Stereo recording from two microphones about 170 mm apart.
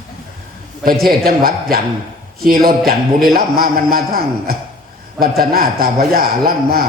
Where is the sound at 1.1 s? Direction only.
60° right (ahead or behind).